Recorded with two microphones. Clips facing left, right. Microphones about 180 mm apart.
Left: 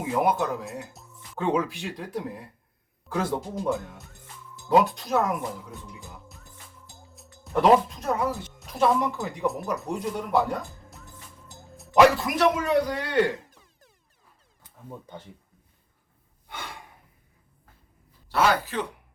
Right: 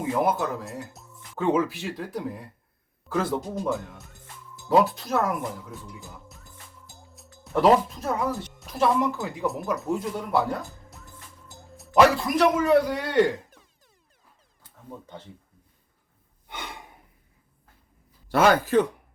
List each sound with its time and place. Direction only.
0.0 s a man's voice: centre (ahead or behind)
14.6 s speech: 10° left (ahead or behind)
16.5 s gasp: 20° right (ahead or behind)
18.3 s speech: 50° right (ahead or behind)